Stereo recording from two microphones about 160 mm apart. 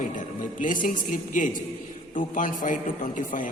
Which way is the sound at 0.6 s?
55° left (ahead or behind).